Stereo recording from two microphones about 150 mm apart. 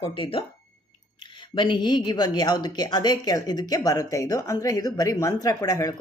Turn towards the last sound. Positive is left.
turn(degrees=25)  # may be behind; listen again after turning